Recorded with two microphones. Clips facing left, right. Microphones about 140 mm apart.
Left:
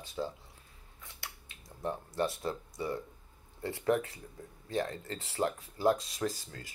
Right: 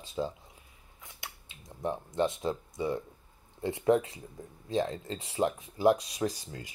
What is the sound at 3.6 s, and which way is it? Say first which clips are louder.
Speech: right 4 dB; 20° right (ahead or behind).